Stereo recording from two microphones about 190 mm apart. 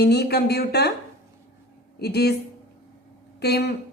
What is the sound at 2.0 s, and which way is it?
Speech, 60° left (ahead or behind).